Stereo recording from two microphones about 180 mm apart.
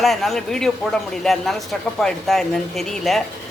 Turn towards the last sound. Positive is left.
turn(degrees=0)  # may be behind; listen again after turning